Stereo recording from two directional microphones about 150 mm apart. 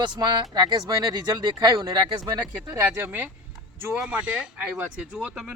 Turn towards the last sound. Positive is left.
turn(degrees=-5)  # may be behind; listen again after turning